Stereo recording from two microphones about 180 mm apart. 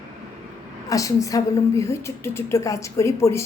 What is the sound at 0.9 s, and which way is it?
A woman's voice, 20° left (ahead or behind).